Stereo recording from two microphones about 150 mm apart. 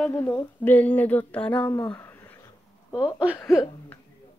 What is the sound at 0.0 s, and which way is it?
Speech, 10° left (ahead or behind).